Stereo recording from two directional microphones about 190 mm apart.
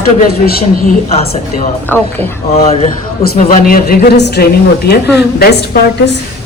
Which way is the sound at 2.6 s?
30° left (ahead or behind).